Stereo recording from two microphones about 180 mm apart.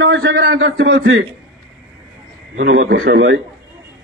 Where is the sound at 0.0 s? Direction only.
90° right.